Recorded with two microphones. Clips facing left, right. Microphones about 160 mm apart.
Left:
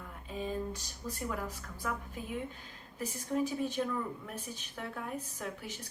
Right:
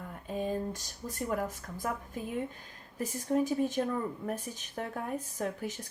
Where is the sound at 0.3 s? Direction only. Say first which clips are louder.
Right 4 dB; 50° right (ahead or behind).